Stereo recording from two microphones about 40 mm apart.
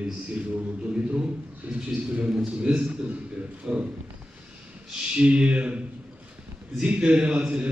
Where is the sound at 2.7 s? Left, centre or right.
Right.